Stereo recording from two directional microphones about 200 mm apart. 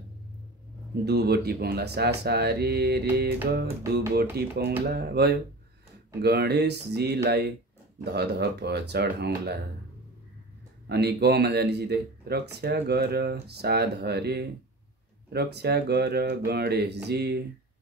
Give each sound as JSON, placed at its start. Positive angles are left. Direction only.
{"t": 1.0, "sound": "speech", "side_deg": -55}
{"t": 10.9, "sound": "speech", "side_deg": -55}